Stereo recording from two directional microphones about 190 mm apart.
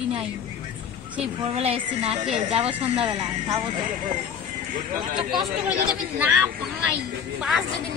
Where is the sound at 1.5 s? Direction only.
30° right (ahead or behind).